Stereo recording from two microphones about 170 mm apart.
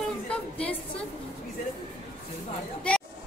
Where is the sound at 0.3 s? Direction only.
5° left (ahead or behind).